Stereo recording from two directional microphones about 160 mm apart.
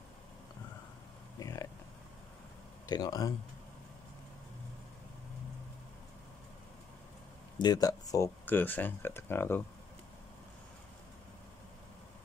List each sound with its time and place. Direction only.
1.4 s a sound: 20° left (ahead or behind)
2.9 s speech: 25° left (ahead or behind)
7.5 s speech: 25° left (ahead or behind)